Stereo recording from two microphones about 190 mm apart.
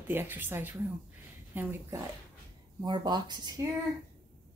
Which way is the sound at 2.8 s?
20° right (ahead or behind).